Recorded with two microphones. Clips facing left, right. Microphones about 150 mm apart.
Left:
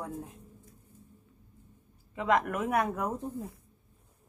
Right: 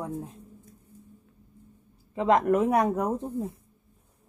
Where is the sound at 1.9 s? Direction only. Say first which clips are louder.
Right 5 dB; 30° right (ahead or behind).